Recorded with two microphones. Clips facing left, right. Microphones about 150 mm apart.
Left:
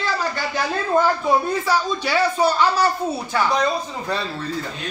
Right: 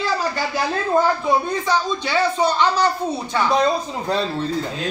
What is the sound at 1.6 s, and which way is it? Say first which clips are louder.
Speech: even; 10° left (ahead or behind).